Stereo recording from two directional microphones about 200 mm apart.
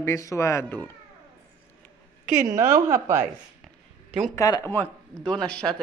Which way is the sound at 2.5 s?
15° right (ahead or behind).